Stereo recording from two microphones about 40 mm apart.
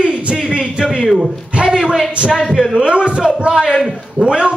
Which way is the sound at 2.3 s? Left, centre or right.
Centre.